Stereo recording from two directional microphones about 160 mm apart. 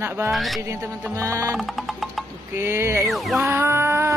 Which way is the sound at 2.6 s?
15° right (ahead or behind).